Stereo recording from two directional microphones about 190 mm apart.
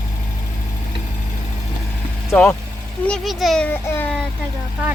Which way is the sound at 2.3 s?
5° left (ahead or behind).